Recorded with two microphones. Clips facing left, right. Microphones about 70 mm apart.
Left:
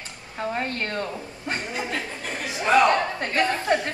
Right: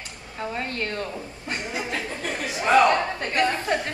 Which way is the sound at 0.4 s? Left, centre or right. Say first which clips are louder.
Left 2 dB; left.